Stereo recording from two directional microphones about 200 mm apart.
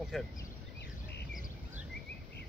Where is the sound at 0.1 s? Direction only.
Centre (ahead or behind).